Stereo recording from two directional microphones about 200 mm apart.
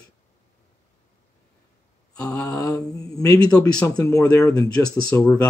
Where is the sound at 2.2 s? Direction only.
15° left (ahead or behind).